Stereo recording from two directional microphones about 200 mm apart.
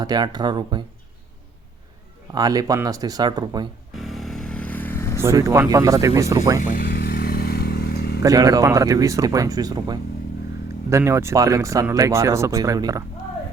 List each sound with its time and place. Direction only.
0.0 s speech: 20° right (ahead or behind)
2.3 s speech: 20° right (ahead or behind)
3.9 s vehicle: centre (ahead or behind)
5.2 s speech: 15° right (ahead or behind)
6.6 s vehicle: 40° left (ahead or behind)
8.2 s speech: 15° right (ahead or behind)